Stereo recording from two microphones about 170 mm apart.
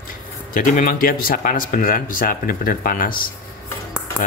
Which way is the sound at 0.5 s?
50° left (ahead or behind).